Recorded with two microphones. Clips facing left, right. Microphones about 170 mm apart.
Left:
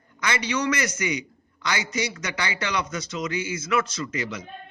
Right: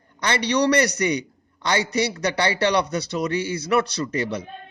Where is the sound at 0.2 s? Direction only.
35° right (ahead or behind).